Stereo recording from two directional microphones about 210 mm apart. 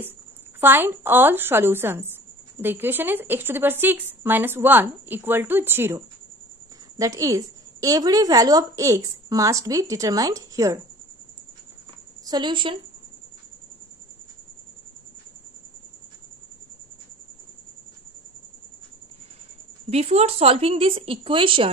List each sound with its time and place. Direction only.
0.6 s a woman's voice: 10° right (ahead or behind)
12.3 s speech: 20° right (ahead or behind)
19.9 s speech: 30° right (ahead or behind)